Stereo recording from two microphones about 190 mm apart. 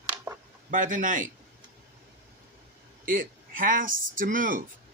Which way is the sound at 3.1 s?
50° right (ahead or behind).